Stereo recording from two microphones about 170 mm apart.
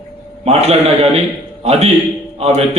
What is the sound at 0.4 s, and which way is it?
Speech, 35° right (ahead or behind).